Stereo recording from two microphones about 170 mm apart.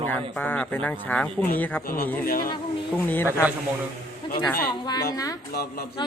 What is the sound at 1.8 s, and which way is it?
Speech, 60° left (ahead or behind).